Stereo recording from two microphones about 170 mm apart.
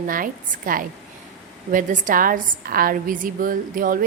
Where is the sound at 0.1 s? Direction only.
55° right (ahead or behind).